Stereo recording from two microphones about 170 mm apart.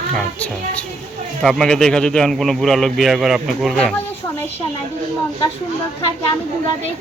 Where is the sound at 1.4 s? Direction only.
Centre (ahead or behind).